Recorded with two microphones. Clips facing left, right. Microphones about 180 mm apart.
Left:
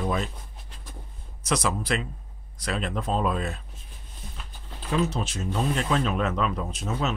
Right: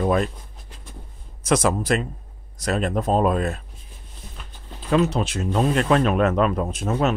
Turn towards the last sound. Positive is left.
turn(degrees=-55)  # may be behind; listen again after turning